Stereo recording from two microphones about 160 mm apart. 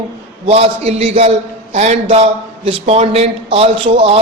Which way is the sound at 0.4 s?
40° right (ahead or behind).